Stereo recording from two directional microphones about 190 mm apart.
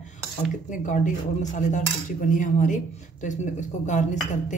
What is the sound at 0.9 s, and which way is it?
Speech, 40° left (ahead or behind).